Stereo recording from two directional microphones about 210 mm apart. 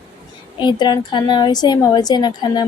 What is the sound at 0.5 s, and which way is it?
A woman's voice, 20° left (ahead or behind).